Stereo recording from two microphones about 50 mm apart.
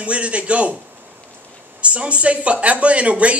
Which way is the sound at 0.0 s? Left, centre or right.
Right.